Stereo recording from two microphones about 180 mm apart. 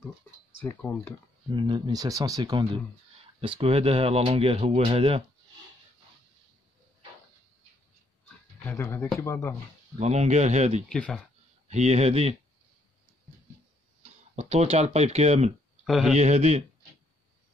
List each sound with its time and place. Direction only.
0.7 s speech: 10° left (ahead or behind)
1.5 s speech: 25° right (ahead or behind)
8.6 s speech: 15° left (ahead or behind)
9.9 s speech: 35° right (ahead or behind)
10.9 s speech: 5° left (ahead or behind)
11.7 s speech: 40° right (ahead or behind)
14.3 s speech: 35° right (ahead or behind)
15.8 s speech: centre (ahead or behind)
16.1 s speech: 40° right (ahead or behind)